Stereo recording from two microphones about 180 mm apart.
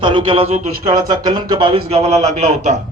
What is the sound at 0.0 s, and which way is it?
Speech, 30° right (ahead or behind).